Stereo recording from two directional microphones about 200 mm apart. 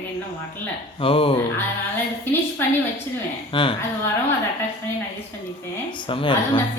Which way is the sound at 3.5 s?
25° left (ahead or behind).